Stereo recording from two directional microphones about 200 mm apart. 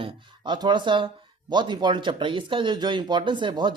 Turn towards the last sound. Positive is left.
turn(degrees=-25)  # may be behind; listen again after turning